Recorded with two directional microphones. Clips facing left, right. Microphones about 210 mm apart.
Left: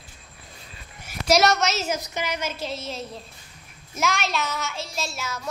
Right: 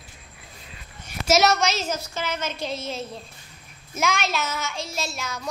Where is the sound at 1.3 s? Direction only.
Centre (ahead or behind).